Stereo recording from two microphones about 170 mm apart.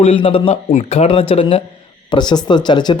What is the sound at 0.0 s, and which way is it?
Speech, 35° left (ahead or behind).